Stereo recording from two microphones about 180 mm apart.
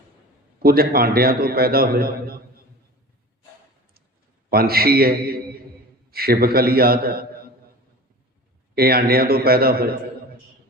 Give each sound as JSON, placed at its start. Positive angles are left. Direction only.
{"t": 0.6, "sound": "a man's voice", "side_deg": -55}
{"t": 4.5, "sound": "a man's voice", "side_deg": -55}
{"t": 8.7, "sound": "a man's voice", "side_deg": -55}